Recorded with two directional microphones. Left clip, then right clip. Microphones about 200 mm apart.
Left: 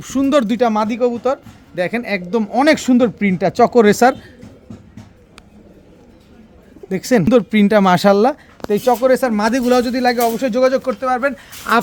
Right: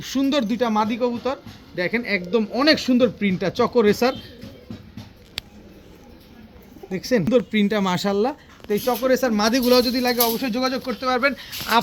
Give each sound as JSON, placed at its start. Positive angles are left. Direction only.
{"t": 0.1, "sound": "speech", "side_deg": 50}
{"t": 6.9, "sound": "speech", "side_deg": 60}